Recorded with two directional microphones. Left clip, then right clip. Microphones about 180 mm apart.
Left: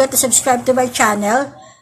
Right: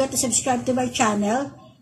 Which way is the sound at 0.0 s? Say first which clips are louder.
Left 8 dB; 5° right (ahead or behind).